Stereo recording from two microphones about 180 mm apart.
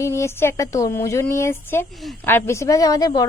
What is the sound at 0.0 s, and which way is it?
A woman's voice, 15° left (ahead or behind).